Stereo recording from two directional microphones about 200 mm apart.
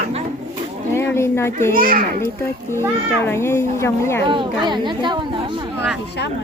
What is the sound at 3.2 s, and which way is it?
Speech, 15° left (ahead or behind).